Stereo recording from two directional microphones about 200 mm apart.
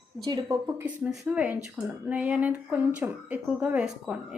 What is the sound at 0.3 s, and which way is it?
Speech, 20° right (ahead or behind).